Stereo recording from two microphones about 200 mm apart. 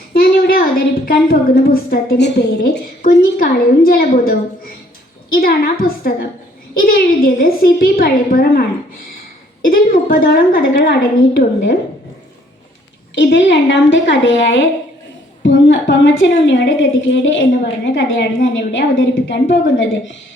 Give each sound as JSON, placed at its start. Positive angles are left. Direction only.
{"t": 0.1, "sound": "a woman's voice", "side_deg": 50}
{"t": 9.6, "sound": "a woman's voice", "side_deg": 45}
{"t": 13.1, "sound": "a woman's voice", "side_deg": 60}